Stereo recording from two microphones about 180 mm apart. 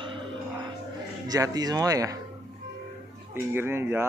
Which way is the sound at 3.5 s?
10° right (ahead or behind).